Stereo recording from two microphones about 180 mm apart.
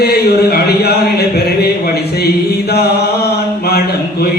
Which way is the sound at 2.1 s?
60° left (ahead or behind).